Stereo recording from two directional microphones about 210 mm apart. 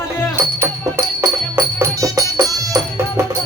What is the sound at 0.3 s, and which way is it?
Music, 10° right (ahead or behind).